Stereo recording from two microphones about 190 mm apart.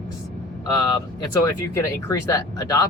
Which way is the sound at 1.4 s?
15° left (ahead or behind).